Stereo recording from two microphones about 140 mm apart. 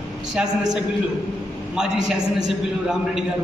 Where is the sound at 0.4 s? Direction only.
5° right (ahead or behind).